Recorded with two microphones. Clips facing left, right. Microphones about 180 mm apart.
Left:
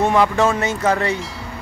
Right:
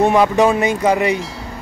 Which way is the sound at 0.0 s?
15° right (ahead or behind).